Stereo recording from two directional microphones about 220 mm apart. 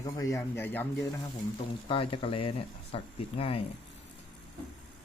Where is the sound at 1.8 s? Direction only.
25° left (ahead or behind).